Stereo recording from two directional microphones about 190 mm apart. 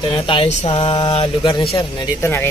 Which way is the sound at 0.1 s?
30° left (ahead or behind).